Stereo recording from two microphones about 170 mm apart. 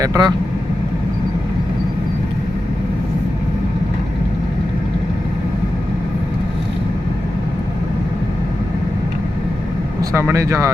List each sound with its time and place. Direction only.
0.0 s speech: 20° right (ahead or behind)
10.0 s speech: 20° right (ahead or behind)